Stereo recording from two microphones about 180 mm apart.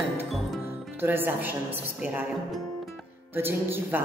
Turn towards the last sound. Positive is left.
turn(degrees=-10)  # may be behind; listen again after turning